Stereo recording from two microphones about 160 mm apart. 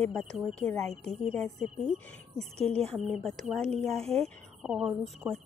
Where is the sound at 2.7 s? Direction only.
5° left (ahead or behind).